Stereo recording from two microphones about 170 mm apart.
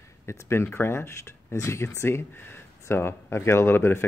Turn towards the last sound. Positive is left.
turn(degrees=15)  # may be behind; listen again after turning